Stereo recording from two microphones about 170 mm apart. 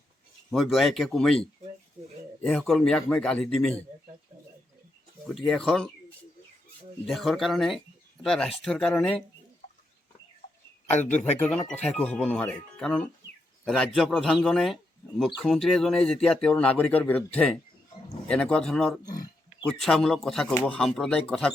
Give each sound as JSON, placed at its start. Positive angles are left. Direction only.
{"t": 0.5, "sound": "speech", "side_deg": 0}
{"t": 5.3, "sound": "speech", "side_deg": 0}
{"t": 7.1, "sound": "speech", "side_deg": 0}
{"t": 11.3, "sound": "speech", "side_deg": 10}
{"t": 19.0, "sound": "a sound", "side_deg": 20}
{"t": 19.8, "sound": "speech", "side_deg": 5}